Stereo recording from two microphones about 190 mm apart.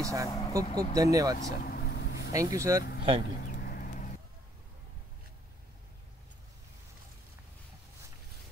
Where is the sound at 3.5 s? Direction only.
50° left (ahead or behind).